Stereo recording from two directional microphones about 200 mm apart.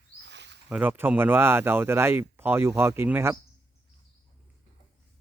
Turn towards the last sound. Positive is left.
turn(degrees=-10)  # may be behind; listen again after turning